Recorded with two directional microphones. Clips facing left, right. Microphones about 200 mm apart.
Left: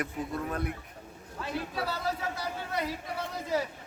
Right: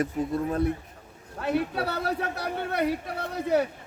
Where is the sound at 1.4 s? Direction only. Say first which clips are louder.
Right 8 dB; 60° right (ahead or behind).